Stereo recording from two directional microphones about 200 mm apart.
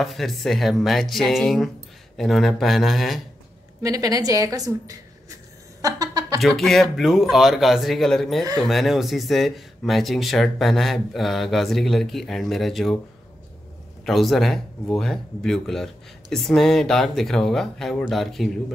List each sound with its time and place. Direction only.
0.0 s speech: centre (ahead or behind)
3.8 s a woman's voice: 20° right (ahead or behind)
5.8 s a sound: 20° right (ahead or behind)
6.4 s speech: centre (ahead or behind)
14.0 s speech: centre (ahead or behind)